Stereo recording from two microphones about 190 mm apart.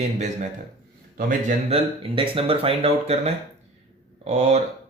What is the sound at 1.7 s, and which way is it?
Speech, 30° right (ahead or behind).